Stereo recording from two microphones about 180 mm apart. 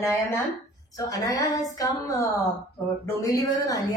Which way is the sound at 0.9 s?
20° left (ahead or behind).